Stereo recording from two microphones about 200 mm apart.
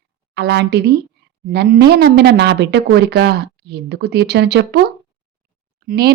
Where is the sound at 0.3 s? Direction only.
55° right (ahead or behind).